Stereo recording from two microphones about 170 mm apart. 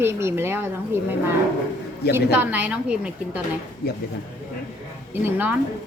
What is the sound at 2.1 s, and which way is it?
A woman's voice, 10° right (ahead or behind).